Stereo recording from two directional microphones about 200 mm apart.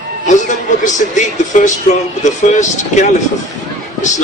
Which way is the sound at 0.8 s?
40° left (ahead or behind).